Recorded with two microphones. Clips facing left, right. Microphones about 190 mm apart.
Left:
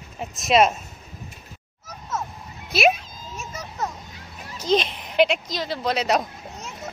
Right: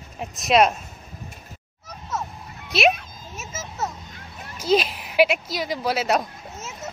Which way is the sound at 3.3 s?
5° right (ahead or behind).